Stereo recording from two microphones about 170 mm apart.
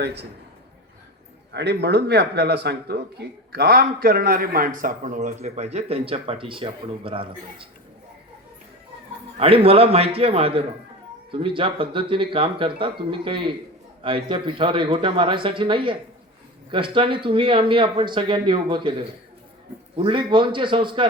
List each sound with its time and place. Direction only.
0.0 s a man's voice: 80° right
1.5 s speech: 85° right; by 7.7 s 30° right (ahead or behind)
9.4 s speech: 35° right (ahead or behind)
20.0 s speech: 30° right (ahead or behind)